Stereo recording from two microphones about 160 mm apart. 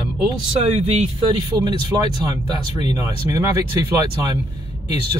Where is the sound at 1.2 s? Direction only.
25° right (ahead or behind).